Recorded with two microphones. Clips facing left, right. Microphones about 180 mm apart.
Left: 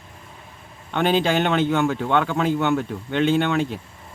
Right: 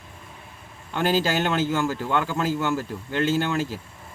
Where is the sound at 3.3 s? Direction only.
65° left (ahead or behind).